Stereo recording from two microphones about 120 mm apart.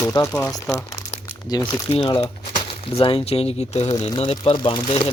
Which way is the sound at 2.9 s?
50° left (ahead or behind).